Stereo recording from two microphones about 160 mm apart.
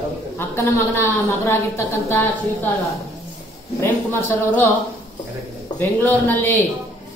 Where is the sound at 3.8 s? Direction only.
15° left (ahead or behind).